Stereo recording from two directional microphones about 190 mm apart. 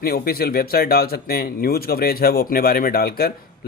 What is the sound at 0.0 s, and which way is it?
Speech, 55° left (ahead or behind).